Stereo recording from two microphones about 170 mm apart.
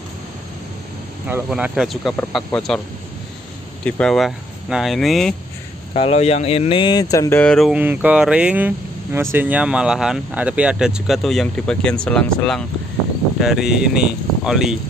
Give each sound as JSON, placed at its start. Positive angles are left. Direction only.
{"t": 1.2, "sound": "speech", "side_deg": -10}
{"t": 3.8, "sound": "speech", "side_deg": 5}
{"t": 5.9, "sound": "speech", "side_deg": 35}
{"t": 7.7, "sound": "speech", "side_deg": -10}